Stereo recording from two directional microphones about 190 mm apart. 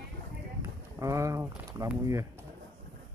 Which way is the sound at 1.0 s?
15° right (ahead or behind).